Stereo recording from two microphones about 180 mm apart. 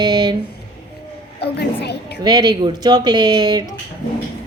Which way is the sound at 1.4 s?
65° left (ahead or behind).